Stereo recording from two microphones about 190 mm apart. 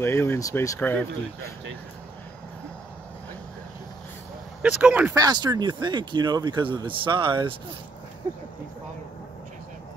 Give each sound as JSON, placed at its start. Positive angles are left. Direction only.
{"t": 0.0, "sound": "speech", "side_deg": 10}
{"t": 4.6, "sound": "speech", "side_deg": -5}
{"t": 5.1, "sound": "speech", "side_deg": -20}